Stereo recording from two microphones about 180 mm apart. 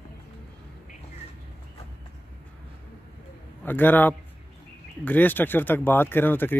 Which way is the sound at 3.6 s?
10° left (ahead or behind).